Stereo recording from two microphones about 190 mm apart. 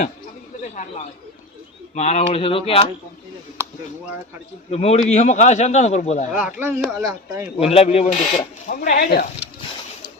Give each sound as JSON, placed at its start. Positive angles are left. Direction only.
{"t": 0.6, "sound": "a sound", "side_deg": 40}
{"t": 2.0, "sound": "speech", "side_deg": 35}
{"t": 4.7, "sound": "speech", "side_deg": 35}
{"t": 6.3, "sound": "speech", "side_deg": -10}
{"t": 7.6, "sound": "speech", "side_deg": 30}